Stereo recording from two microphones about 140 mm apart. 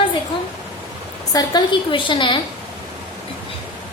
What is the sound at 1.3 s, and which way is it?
A woman's voice, 30° left (ahead or behind).